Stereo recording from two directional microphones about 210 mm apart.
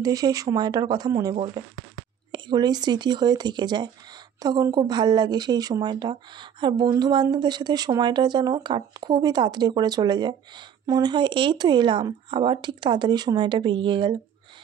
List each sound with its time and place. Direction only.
0.0 s speech: 15° right (ahead or behind)